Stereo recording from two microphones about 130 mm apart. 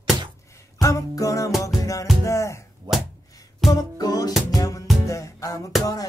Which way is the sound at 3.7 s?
30° left (ahead or behind).